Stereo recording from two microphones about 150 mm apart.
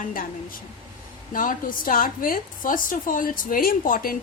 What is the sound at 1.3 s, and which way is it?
A woman's voice, 65° left (ahead or behind).